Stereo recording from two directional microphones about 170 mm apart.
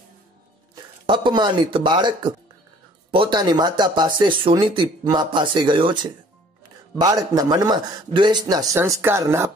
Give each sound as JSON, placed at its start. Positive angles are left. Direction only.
{"t": 1.0, "sound": "speech", "side_deg": -30}